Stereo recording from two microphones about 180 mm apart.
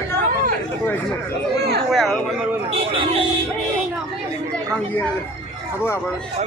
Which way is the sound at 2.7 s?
30° right (ahead or behind).